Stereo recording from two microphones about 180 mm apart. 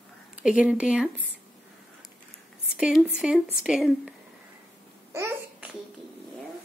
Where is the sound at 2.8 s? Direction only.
Centre (ahead or behind).